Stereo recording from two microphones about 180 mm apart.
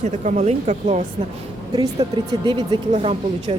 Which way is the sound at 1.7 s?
20° right (ahead or behind).